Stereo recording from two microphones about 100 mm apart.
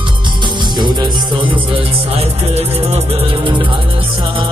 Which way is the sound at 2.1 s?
90° right.